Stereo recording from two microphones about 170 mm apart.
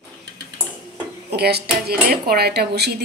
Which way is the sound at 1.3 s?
70° right (ahead or behind).